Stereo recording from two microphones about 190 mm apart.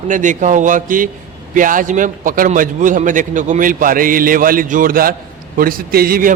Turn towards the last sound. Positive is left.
turn(degrees=-50)  # may be behind; listen again after turning